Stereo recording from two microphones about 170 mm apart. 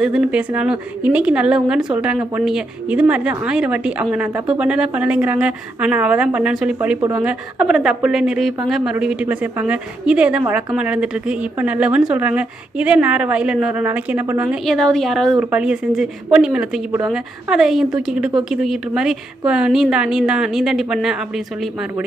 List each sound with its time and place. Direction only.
0.0 s a woman's voice: 5° right (ahead or behind)
7.0 s speech: 20° right (ahead or behind)
7.2 s a woman's voice: 5° right (ahead or behind)